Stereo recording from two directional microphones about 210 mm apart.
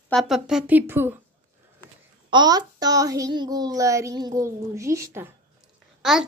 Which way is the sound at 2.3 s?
20° right (ahead or behind).